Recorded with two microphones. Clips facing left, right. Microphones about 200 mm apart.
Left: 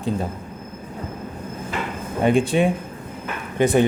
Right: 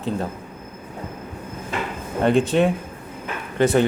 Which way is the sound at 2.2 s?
10° left (ahead or behind).